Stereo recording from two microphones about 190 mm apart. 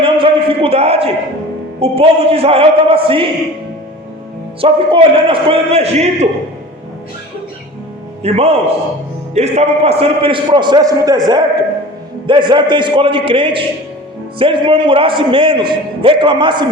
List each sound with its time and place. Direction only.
0.0 s a sound: 30° right (ahead or behind)
1.8 s a man's voice: 30° right (ahead or behind)
4.6 s a man's voice: 25° right (ahead or behind)
8.2 s a man's voice: 30° right (ahead or behind)